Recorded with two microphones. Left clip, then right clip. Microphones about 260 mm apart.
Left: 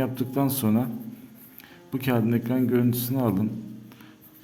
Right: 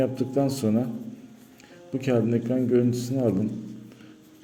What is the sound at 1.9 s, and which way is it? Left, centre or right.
A man's voice, centre.